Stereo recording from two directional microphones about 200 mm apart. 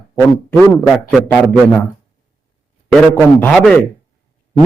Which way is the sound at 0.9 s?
5° right (ahead or behind).